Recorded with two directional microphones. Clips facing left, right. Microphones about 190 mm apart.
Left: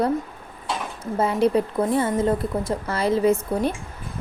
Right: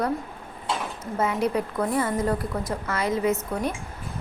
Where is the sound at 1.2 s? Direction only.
30° left (ahead or behind).